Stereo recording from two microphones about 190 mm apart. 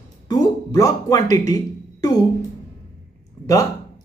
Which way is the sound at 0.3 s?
20° left (ahead or behind).